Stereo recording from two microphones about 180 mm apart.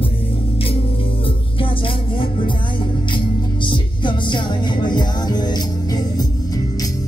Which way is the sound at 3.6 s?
25° left (ahead or behind).